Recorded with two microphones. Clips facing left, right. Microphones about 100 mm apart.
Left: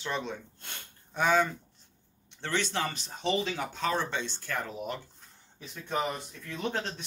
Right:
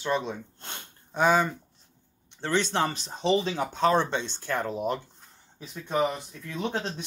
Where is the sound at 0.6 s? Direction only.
20° right (ahead or behind).